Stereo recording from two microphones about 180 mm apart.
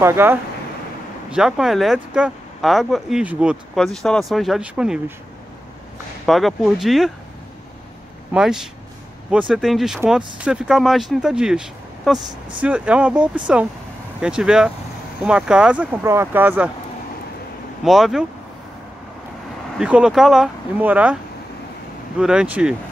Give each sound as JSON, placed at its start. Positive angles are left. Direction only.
{"t": 0.0, "sound": "speech", "side_deg": -15}
{"t": 6.2, "sound": "speech", "side_deg": 0}
{"t": 8.3, "sound": "speech", "side_deg": -5}
{"t": 12.3, "sound": "speech", "side_deg": -25}
{"t": 12.6, "sound": "speech", "side_deg": -5}
{"t": 17.8, "sound": "speech", "side_deg": 0}
{"t": 19.8, "sound": "speech", "side_deg": -5}
{"t": 22.2, "sound": "speech", "side_deg": -5}